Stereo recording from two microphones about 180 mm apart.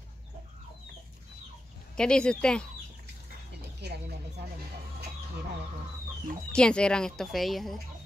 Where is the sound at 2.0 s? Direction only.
5° left (ahead or behind).